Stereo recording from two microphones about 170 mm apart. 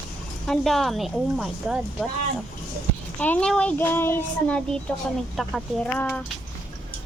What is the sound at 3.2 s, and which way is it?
A child's voice, 5° left (ahead or behind).